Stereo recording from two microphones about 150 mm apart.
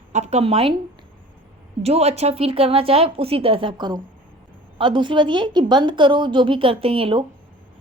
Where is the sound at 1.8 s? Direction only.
45° right (ahead or behind).